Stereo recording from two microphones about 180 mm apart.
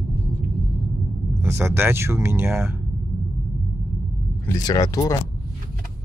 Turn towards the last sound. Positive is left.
turn(degrees=20)  # may be behind; listen again after turning